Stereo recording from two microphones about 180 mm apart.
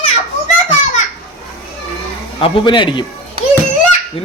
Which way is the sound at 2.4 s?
25° left (ahead or behind).